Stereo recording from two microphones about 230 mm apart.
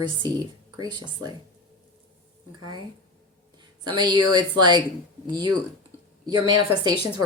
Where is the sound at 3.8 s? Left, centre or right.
Centre.